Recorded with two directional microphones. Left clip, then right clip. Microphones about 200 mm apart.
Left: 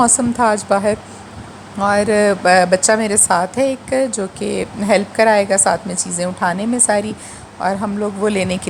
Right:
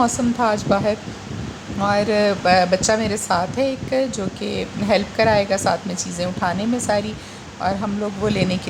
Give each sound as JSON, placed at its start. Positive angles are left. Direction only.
{"t": 0.0, "sound": "a woman's voice", "side_deg": 30}